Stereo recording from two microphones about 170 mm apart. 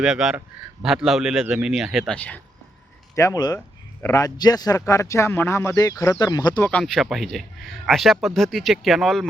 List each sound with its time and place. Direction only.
0.0 s a man's voice: 5° right (ahead or behind)
3.2 s a man's voice: 20° left (ahead or behind)
6.6 s a man's voice: 5° left (ahead or behind)